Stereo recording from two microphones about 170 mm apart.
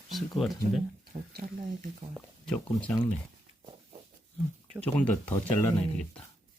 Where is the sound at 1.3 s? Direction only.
55° right (ahead or behind).